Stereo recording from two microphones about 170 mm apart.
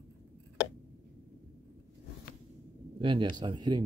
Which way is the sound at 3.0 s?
30° right (ahead or behind).